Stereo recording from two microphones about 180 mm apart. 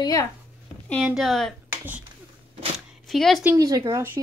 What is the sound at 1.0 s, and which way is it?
Speech, centre (ahead or behind).